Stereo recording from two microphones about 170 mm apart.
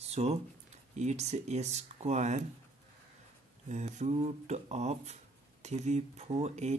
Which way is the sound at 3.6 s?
40° right (ahead or behind).